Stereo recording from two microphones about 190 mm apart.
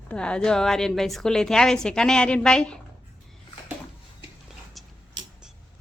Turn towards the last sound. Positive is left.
turn(degrees=0)  # may be behind; listen again after turning